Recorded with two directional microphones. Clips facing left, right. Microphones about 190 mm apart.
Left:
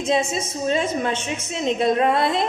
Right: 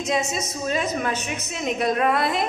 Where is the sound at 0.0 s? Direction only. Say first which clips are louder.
Left 3 dB; 30° left (ahead or behind).